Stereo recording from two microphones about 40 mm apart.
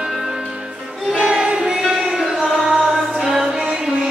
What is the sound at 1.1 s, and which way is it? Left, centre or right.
Choir, centre.